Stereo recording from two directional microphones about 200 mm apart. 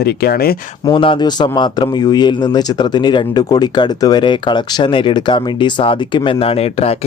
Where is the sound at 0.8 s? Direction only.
25° left (ahead or behind).